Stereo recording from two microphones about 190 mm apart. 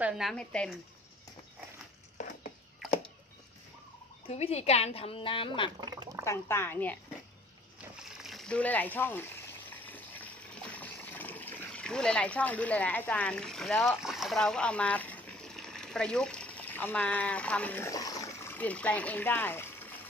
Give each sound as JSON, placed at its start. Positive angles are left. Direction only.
{"t": 0.0, "sound": "speech", "side_deg": 0}
{"t": 4.3, "sound": "a woman's voice", "side_deg": 35}
{"t": 5.8, "sound": "speech", "side_deg": -20}
{"t": 6.2, "sound": "speech", "side_deg": 15}
{"t": 8.0, "sound": "speech", "side_deg": 0}
{"t": 9.7, "sound": "water", "side_deg": 10}